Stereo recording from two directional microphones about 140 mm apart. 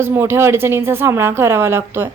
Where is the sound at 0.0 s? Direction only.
20° right (ahead or behind).